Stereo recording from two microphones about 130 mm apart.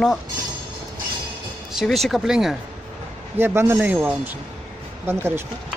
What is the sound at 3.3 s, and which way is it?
Speech, 15° right (ahead or behind).